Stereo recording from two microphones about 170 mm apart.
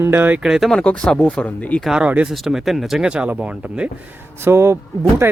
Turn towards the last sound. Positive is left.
turn(degrees=-15)  # may be behind; listen again after turning